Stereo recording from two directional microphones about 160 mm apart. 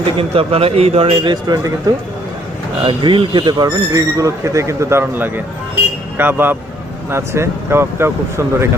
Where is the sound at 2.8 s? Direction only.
30° right (ahead or behind).